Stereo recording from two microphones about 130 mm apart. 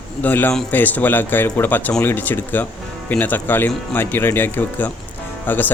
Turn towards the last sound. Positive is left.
turn(degrees=15)  # may be behind; listen again after turning